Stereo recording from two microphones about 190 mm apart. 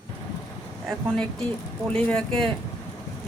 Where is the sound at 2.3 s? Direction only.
25° right (ahead or behind).